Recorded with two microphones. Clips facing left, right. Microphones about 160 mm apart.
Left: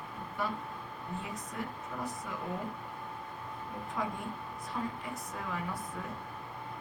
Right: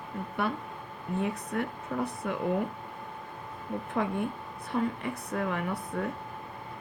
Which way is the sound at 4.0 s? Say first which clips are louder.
Right 6 dB; 55° right (ahead or behind).